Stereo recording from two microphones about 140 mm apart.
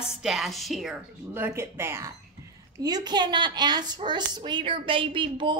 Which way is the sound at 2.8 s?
30° right (ahead or behind).